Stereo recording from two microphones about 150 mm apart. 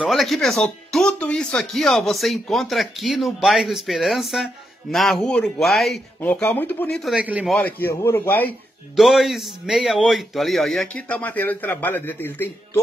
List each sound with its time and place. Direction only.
0.0 s speech: centre (ahead or behind)
6.2 s a man's voice: 10° left (ahead or behind)
7.1 s a man's voice: 10° right (ahead or behind)
7.8 s a man's voice: 20° left (ahead or behind)
8.9 s speech: centre (ahead or behind)